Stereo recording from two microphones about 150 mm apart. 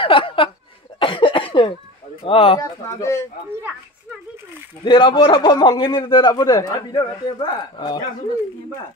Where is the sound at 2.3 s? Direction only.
35° left (ahead or behind).